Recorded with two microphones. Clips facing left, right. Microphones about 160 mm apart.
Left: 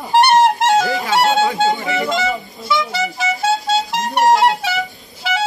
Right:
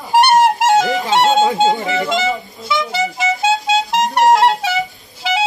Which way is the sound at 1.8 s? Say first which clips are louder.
Right 1 dB; centre (ahead or behind).